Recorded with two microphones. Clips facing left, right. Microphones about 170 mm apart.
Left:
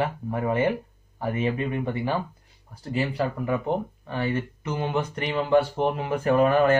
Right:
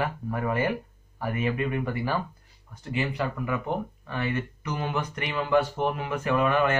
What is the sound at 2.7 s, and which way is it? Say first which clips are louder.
A man's voice: left 2 dB; 35° left (ahead or behind).